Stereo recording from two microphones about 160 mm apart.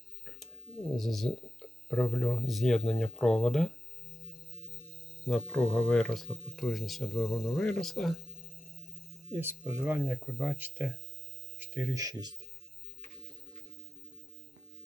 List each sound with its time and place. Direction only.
0.9 s speech: centre (ahead or behind)
5.2 s speech: 5° left (ahead or behind)
9.3 s speech: 10° right (ahead or behind)